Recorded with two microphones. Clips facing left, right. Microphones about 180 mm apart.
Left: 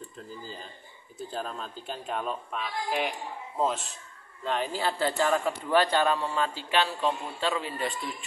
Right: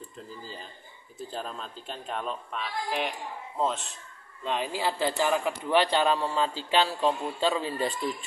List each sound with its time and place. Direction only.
1.3 s a man's voice: centre (ahead or behind)
4.5 s speech: 15° right (ahead or behind); by 7.9 s 30° right (ahead or behind)